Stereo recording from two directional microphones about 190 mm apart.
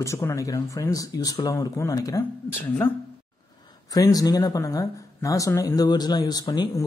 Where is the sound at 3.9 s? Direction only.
20° left (ahead or behind).